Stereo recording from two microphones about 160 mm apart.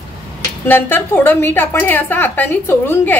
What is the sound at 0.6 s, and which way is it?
A woman's voice, 10° left (ahead or behind).